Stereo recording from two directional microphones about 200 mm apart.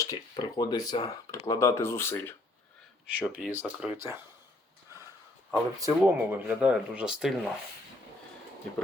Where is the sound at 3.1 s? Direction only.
10° right (ahead or behind).